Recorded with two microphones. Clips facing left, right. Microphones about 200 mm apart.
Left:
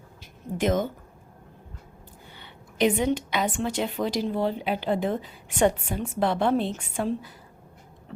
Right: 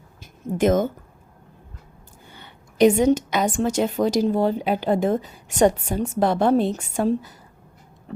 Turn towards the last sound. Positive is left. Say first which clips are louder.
# right 6 dB
turn(degrees=-40)  # may be behind; listen again after turning